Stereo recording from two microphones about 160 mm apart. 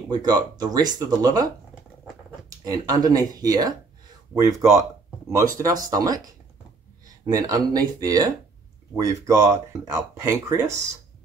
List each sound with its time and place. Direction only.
0.1 s speech: 25° right (ahead or behind)
2.6 s speech: 25° right (ahead or behind)
7.4 s speech: 25° right (ahead or behind)